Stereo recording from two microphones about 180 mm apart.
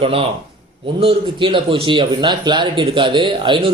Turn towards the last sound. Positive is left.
turn(degrees=-25)  # may be behind; listen again after turning